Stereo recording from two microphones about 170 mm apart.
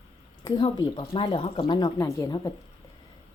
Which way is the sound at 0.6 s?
25° left (ahead or behind).